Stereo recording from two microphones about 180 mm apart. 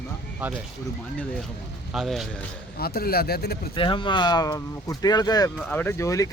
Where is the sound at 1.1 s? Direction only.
5° left (ahead or behind).